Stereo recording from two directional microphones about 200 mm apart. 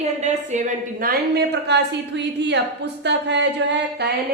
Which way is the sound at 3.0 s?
60° right (ahead or behind).